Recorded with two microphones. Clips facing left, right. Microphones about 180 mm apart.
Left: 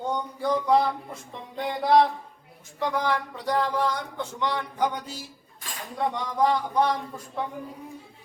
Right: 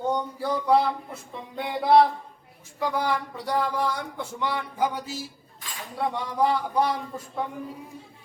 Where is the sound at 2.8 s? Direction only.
10° right (ahead or behind).